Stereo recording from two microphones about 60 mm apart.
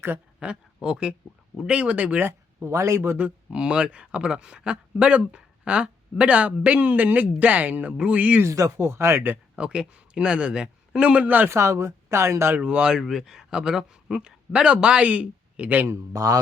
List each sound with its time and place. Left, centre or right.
0.3 s speech: centre
2.2 s speech: right
3.2 s speech: centre
8.4 s speech: right
9.6 s a man's voice: centre
11.4 s speech: right
12.5 s speech: centre
13.0 s speech: centre; by 15.9 s right
16.1 s speech: right